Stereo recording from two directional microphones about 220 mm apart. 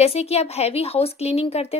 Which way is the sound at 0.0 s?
30° left (ahead or behind).